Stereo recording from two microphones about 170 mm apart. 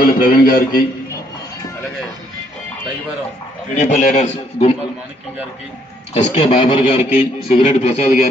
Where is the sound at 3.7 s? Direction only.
45° left (ahead or behind).